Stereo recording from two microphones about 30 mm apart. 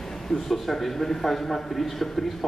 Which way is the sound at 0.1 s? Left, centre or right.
Centre.